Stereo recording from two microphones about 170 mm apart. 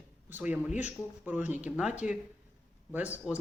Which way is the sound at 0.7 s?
45° left (ahead or behind).